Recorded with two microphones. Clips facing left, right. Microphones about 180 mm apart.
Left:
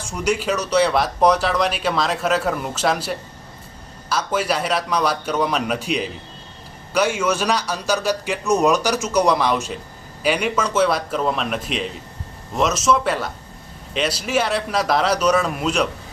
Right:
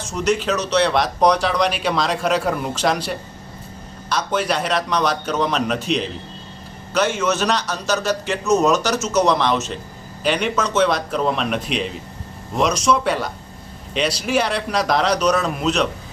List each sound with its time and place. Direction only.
0.1 s speech: 10° left (ahead or behind)
4.3 s a man's voice: 5° left (ahead or behind)